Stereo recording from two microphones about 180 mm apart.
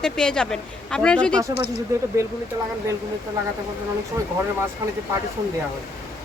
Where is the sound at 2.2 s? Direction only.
15° right (ahead or behind).